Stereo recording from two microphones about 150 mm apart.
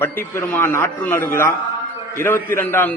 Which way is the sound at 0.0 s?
15° left (ahead or behind).